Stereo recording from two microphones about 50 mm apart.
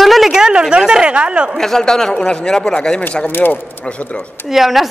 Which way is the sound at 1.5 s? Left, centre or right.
Centre.